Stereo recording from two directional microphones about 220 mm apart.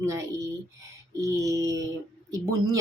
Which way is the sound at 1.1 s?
15° right (ahead or behind).